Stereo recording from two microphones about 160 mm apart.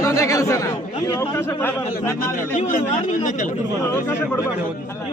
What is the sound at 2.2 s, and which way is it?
Speech, 55° left (ahead or behind).